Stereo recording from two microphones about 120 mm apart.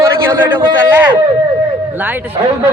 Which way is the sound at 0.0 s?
20° right (ahead or behind).